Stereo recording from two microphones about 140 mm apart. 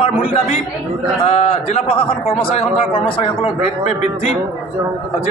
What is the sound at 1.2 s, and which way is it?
A man's voice, 50° left (ahead or behind).